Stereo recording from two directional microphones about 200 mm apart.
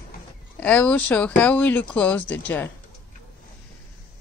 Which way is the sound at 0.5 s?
10° left (ahead or behind).